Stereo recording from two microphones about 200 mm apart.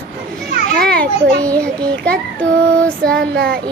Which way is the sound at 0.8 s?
5° left (ahead or behind).